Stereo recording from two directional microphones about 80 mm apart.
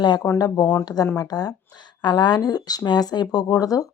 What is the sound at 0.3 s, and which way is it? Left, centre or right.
A woman's voice, left.